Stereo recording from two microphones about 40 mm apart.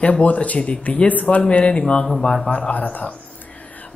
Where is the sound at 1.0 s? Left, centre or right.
Left.